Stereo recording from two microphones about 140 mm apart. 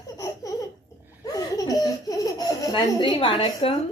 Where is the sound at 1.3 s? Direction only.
25° left (ahead or behind).